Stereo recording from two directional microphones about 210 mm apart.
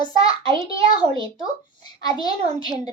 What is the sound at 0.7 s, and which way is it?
Speech, 25° right (ahead or behind).